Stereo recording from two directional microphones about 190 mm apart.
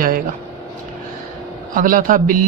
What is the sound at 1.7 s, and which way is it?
Speech, 45° right (ahead or behind).